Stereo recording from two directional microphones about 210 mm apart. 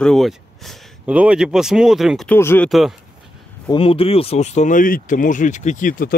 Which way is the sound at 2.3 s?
10° left (ahead or behind).